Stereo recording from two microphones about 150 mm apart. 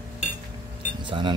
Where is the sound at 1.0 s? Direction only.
30° right (ahead or behind).